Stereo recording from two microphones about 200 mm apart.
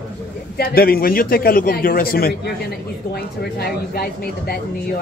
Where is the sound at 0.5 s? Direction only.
50° left (ahead or behind).